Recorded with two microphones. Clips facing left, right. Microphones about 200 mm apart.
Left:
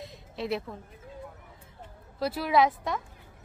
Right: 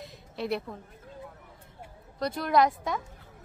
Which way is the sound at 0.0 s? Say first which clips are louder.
Even; centre (ahead or behind).